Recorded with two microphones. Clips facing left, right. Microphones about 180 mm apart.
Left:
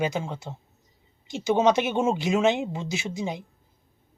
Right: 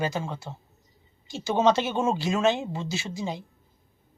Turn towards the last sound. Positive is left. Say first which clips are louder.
# left 2 dB
turn(degrees=20)  # may be behind; listen again after turning